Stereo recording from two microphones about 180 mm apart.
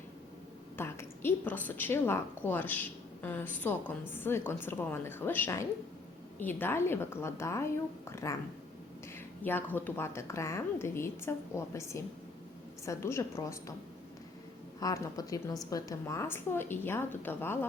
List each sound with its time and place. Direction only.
0.8 s a woman's voice: 15° left (ahead or behind)
9.4 s a woman's voice: 10° left (ahead or behind)
14.8 s a woman's voice: 20° left (ahead or behind)